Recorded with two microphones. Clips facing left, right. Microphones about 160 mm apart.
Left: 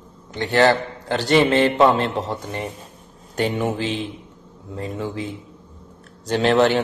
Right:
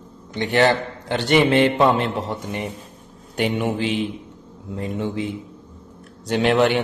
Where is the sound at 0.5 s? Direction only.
20° right (ahead or behind).